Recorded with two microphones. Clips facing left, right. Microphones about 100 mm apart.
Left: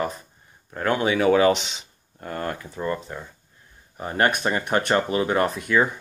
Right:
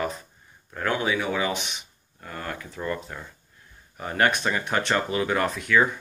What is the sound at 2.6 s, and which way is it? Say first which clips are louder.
Speech: left 3 dB; 25° left (ahead or behind).